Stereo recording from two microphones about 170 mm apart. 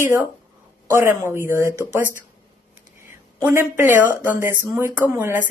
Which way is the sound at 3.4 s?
15° right (ahead or behind).